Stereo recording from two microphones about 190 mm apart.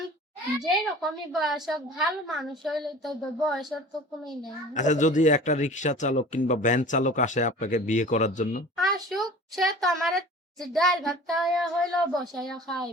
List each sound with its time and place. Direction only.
0.6 s a woman's voice: centre (ahead or behind)
4.7 s speech: 40° left (ahead or behind)
9.0 s a woman's voice: centre (ahead or behind)